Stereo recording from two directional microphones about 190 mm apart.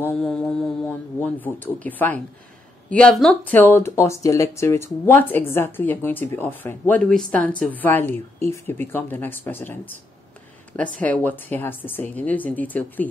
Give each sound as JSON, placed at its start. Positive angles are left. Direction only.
{"t": 0.0, "sound": "a sound", "side_deg": 10}
{"t": 2.9, "sound": "speech", "side_deg": 5}
{"t": 10.8, "sound": "speech", "side_deg": 10}